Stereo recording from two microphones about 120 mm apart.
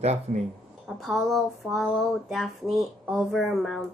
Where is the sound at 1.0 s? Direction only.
Centre (ahead or behind).